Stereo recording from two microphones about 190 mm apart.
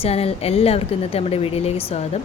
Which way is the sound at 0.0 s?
30° left (ahead or behind).